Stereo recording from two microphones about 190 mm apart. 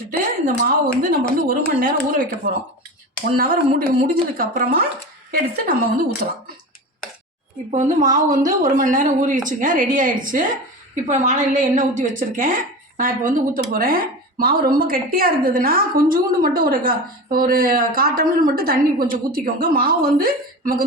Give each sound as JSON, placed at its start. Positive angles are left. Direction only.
{"t": 0.4, "sound": "speech", "side_deg": -50}
{"t": 3.3, "sound": "speech", "side_deg": -50}
{"t": 7.7, "sound": "a woman's voice", "side_deg": -40}